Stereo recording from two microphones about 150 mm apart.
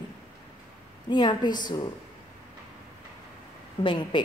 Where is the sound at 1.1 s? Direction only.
30° left (ahead or behind).